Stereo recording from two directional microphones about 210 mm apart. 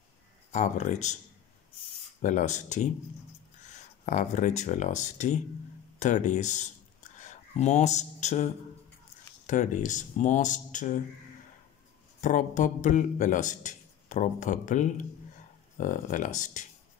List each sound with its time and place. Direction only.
0.5 s a man's voice: 35° left (ahead or behind)
2.2 s a man's voice: 35° left (ahead or behind)
9.5 s a man's voice: 35° left (ahead or behind)
12.2 s a man's voice: 35° left (ahead or behind)